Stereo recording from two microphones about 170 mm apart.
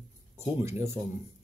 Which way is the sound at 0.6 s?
15° right (ahead or behind).